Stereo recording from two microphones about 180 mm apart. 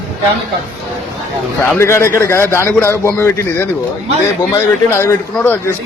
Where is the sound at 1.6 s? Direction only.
15° left (ahead or behind).